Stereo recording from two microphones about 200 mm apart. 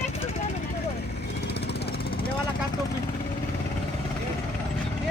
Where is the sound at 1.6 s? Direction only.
55° left (ahead or behind).